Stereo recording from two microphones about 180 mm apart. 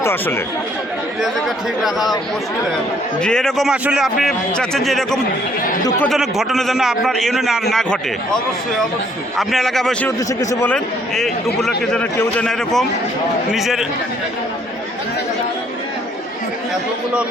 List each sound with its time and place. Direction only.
0.0 s speech: 15° left (ahead or behind)
1.8 s a man's voice: centre (ahead or behind)
3.2 s a man's voice: 5° left (ahead or behind)
9.4 s a man's voice: centre (ahead or behind)
10.2 s speech: 20° left (ahead or behind)
11.1 s a man's voice: centre (ahead or behind)